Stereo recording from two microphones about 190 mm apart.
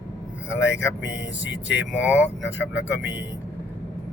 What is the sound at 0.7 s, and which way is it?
Speech, 70° left (ahead or behind).